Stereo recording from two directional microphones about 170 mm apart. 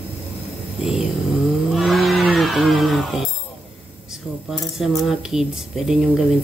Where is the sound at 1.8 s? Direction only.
Centre (ahead or behind).